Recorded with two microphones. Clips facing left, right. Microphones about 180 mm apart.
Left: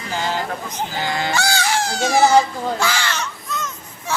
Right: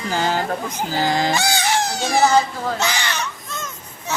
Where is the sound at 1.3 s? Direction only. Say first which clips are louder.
Even; 15° right (ahead or behind).